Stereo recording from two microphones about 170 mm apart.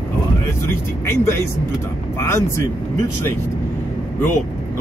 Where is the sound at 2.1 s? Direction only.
15° left (ahead or behind).